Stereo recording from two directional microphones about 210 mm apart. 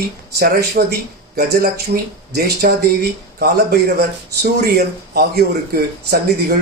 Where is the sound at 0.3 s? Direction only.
50° right (ahead or behind).